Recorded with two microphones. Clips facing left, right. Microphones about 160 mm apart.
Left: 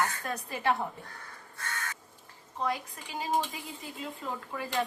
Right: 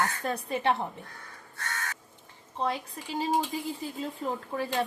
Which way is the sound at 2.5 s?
30° right (ahead or behind).